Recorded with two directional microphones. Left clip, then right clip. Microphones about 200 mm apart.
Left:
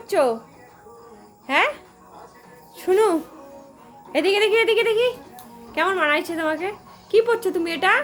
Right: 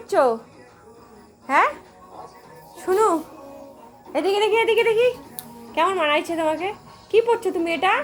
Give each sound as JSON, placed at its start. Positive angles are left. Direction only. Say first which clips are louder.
{"t": 0.1, "sound": "speech", "louder": "right 1 dB", "side_deg": 5}
{"t": 2.7, "sound": "speech", "louder": "left 1 dB", "side_deg": 30}
{"t": 4.1, "sound": "a woman's voice", "louder": "left 1 dB", "side_deg": 20}